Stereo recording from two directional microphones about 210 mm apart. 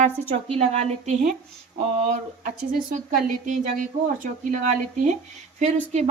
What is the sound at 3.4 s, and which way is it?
Speech, 40° right (ahead or behind).